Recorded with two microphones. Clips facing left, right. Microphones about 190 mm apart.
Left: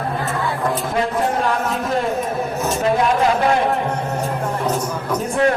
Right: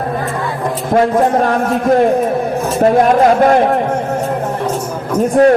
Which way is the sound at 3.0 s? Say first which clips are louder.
Right 8 dB; 50° right (ahead or behind).